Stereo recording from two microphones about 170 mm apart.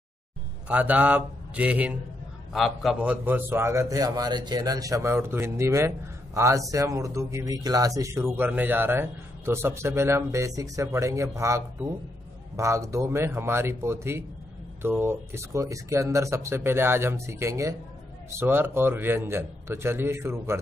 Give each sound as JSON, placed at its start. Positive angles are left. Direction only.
{"t": 0.7, "sound": "a man's voice", "side_deg": -10}